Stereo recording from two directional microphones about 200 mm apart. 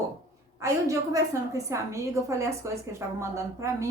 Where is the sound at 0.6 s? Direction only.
15° right (ahead or behind).